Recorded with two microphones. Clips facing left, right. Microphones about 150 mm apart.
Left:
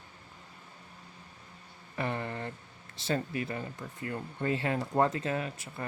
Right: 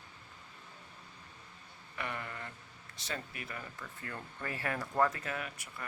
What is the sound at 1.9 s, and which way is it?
Speech, 30° left (ahead or behind).